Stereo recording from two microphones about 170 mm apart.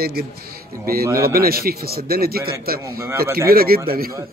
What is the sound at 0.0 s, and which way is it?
A man's voice, 65° right (ahead or behind).